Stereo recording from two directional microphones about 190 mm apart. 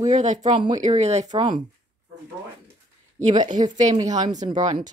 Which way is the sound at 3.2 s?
40° right (ahead or behind).